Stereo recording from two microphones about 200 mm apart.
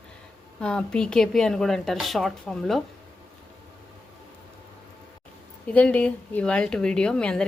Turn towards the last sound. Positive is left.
turn(degrees=5)  # may be behind; listen again after turning